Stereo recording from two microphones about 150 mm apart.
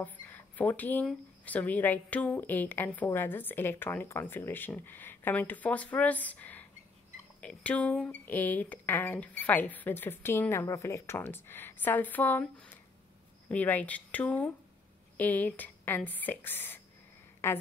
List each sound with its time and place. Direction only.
0.0 s a woman's voice: 10° left (ahead or behind)